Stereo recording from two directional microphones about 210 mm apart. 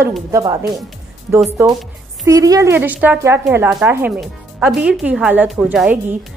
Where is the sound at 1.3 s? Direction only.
5° right (ahead or behind).